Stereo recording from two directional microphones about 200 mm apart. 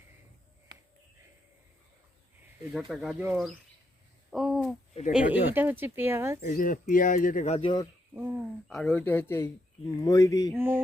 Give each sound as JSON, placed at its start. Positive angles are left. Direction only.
{"t": 2.9, "sound": "speech", "side_deg": 0}
{"t": 4.3, "sound": "a sound", "side_deg": 0}
{"t": 5.1, "sound": "speech", "side_deg": -5}
{"t": 6.4, "sound": "speech", "side_deg": 40}
{"t": 8.1, "sound": "speech", "side_deg": -10}
{"t": 8.6, "sound": "speech", "side_deg": 5}
{"t": 10.5, "sound": "speech", "side_deg": -10}